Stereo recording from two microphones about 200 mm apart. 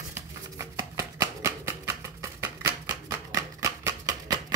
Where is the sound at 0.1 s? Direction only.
15° right (ahead or behind).